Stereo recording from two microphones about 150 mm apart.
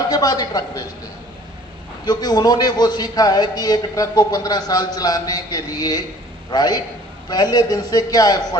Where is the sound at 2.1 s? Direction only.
25° left (ahead or behind).